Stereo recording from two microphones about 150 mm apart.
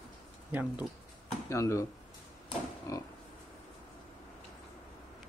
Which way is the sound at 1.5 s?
20° left (ahead or behind).